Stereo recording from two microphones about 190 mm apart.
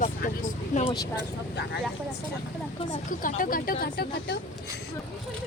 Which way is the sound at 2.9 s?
45° left (ahead or behind).